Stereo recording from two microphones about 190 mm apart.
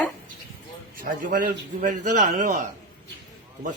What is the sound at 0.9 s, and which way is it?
A man's voice, 45° right (ahead or behind).